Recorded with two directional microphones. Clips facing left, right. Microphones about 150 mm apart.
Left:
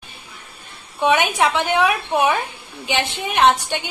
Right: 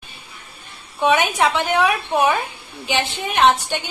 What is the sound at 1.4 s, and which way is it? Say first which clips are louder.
Speech: even; centre (ahead or behind).